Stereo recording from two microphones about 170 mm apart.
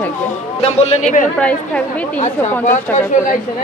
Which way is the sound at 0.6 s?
35° left (ahead or behind).